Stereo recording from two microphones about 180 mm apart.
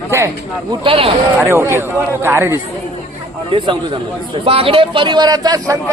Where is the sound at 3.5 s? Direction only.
30° right (ahead or behind).